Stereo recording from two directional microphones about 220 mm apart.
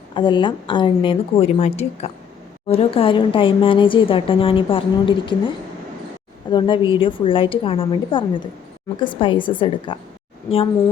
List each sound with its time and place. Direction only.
0.1 s speech: 20° left (ahead or behind)
6.5 s speech: 20° left (ahead or behind)